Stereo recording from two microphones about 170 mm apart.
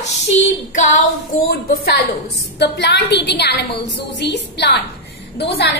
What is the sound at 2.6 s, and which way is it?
A woman's voice, 90° left.